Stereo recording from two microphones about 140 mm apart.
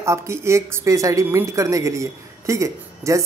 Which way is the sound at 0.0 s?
20° right (ahead or behind).